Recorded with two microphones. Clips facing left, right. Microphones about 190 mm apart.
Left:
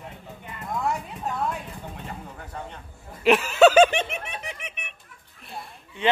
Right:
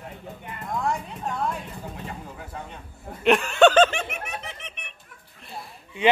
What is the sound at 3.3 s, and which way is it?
Laughter, 5° left (ahead or behind).